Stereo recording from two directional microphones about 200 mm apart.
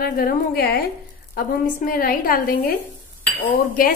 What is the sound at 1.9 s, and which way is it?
A woman's voice, 45° left (ahead or behind).